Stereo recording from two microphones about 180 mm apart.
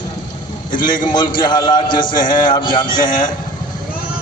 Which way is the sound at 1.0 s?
25° left (ahead or behind).